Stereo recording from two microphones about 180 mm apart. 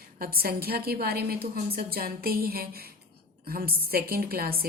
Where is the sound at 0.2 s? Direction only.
55° right (ahead or behind).